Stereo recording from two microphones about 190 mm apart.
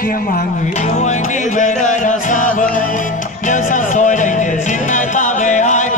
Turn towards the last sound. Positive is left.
turn(degrees=40)  # may be behind; listen again after turning